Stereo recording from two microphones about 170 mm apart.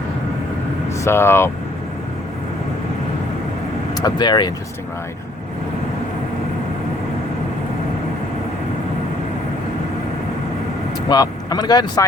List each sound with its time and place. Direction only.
1.0 s speech: 15° left (ahead or behind)
3.9 s speech: 25° left (ahead or behind)
11.1 s speech: 25° left (ahead or behind)